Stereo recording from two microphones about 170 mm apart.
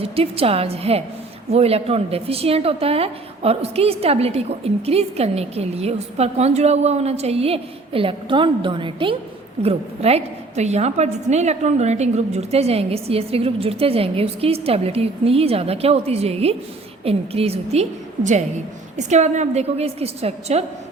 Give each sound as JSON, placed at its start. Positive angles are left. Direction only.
{"t": 0.0, "sound": "a woman's voice", "side_deg": -35}